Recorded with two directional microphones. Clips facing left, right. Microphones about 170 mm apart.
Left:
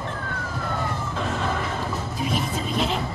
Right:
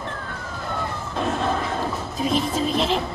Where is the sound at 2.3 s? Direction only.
30° right (ahead or behind).